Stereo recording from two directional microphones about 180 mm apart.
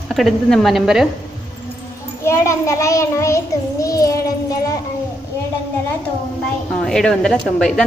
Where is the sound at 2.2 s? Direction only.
15° left (ahead or behind).